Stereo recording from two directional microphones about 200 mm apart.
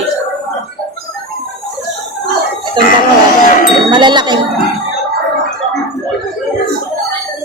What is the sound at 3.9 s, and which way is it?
Speech, 20° right (ahead or behind).